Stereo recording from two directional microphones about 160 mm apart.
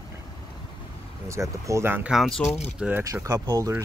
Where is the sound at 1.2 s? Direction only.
20° right (ahead or behind); by 2.4 s centre (ahead or behind).